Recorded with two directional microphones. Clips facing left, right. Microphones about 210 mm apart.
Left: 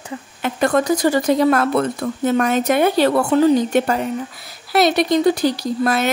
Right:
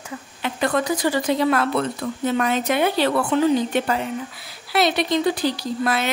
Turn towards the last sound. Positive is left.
turn(degrees=45)  # may be behind; listen again after turning